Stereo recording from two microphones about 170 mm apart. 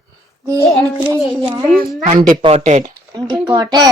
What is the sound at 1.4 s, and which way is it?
Speech, 30° right (ahead or behind).